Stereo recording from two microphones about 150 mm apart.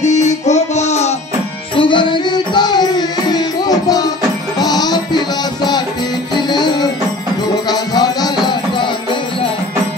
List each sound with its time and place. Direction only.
0.0 s music: 50° left (ahead or behind)
1.8 s music: 30° left (ahead or behind)